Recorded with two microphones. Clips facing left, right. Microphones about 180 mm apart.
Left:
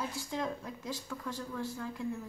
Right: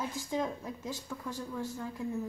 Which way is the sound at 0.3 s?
20° right (ahead or behind).